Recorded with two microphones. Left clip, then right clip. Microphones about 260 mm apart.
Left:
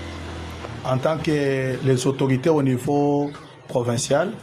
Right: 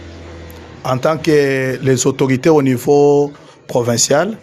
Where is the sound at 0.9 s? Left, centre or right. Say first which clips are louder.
Right 8 dB; right.